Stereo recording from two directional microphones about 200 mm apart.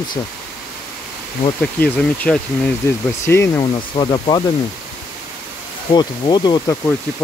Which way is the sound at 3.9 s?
25° left (ahead or behind).